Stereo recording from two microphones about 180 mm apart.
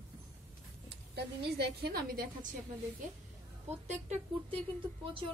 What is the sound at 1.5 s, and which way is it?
Speech, 65° right (ahead or behind).